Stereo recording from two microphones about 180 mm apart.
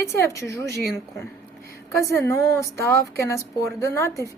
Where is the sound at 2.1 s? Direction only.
15° left (ahead or behind).